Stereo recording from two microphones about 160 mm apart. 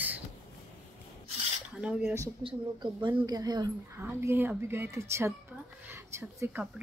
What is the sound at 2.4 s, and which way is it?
Speech, 30° right (ahead or behind).